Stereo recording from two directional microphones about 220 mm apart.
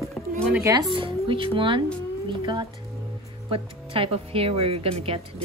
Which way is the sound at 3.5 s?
25° right (ahead or behind).